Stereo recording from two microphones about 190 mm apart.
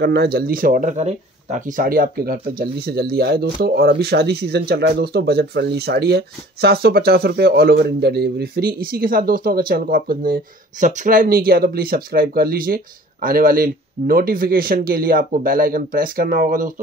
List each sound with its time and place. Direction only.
0.0 s speech: 60° right (ahead or behind)